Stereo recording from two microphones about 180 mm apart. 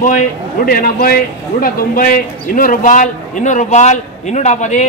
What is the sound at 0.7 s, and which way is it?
A man's voice, 50° left (ahead or behind).